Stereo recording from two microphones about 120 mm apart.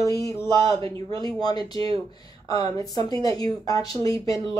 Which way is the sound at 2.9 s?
30° left (ahead or behind).